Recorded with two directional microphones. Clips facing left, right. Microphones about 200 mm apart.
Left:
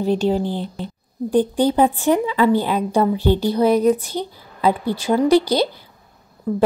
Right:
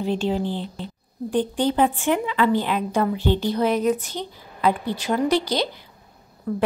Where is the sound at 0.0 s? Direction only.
40° left (ahead or behind).